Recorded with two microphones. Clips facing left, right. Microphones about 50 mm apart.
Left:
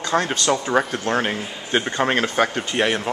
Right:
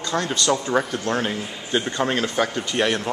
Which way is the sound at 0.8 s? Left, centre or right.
Left.